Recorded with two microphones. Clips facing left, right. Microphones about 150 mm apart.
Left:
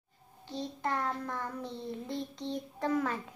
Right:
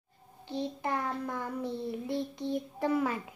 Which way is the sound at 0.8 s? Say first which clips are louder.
Left 3 dB; 15° right (ahead or behind).